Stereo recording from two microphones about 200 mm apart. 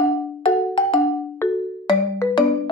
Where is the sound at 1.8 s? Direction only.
20° left (ahead or behind).